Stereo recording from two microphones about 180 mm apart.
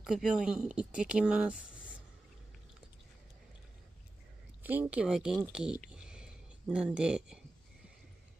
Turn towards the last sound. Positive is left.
turn(degrees=-5)  # may be behind; listen again after turning